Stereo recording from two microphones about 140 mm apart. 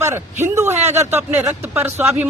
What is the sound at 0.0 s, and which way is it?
A man's voice, 20° right (ahead or behind).